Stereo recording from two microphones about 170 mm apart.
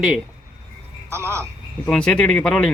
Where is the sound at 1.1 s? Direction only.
15° right (ahead or behind).